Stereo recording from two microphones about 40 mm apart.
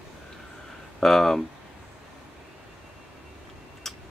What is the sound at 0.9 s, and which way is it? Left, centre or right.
Speech, centre.